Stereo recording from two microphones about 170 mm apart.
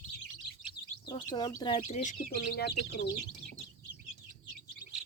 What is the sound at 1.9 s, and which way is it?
Speech, 40° left (ahead or behind).